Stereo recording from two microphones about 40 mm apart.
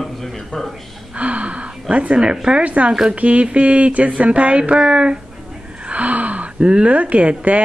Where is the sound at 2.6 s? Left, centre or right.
Right.